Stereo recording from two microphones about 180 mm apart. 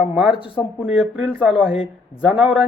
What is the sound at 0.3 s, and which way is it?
Speech, 30° left (ahead or behind).